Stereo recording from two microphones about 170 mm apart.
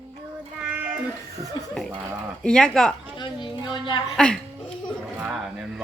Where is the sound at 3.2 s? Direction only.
30° left (ahead or behind).